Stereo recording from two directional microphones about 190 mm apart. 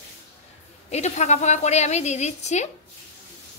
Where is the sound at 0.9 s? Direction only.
35° left (ahead or behind).